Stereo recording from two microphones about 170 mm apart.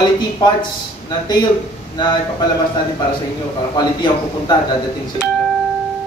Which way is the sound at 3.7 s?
25° left (ahead or behind).